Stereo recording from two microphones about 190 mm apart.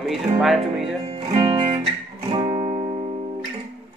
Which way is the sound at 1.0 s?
30° right (ahead or behind).